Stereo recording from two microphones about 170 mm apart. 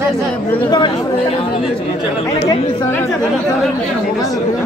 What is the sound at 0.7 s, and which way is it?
Speech, 25° left (ahead or behind).